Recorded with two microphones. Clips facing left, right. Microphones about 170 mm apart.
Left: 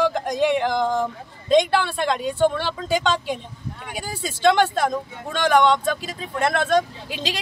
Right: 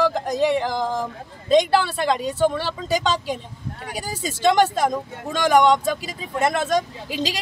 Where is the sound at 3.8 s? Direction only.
40° right (ahead or behind).